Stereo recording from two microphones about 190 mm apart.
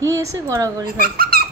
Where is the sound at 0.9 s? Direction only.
50° right (ahead or behind).